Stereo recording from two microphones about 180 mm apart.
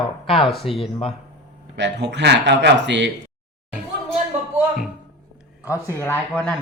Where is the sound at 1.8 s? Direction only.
75° right (ahead or behind).